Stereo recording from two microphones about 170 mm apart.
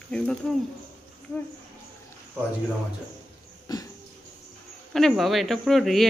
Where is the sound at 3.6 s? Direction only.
20° left (ahead or behind).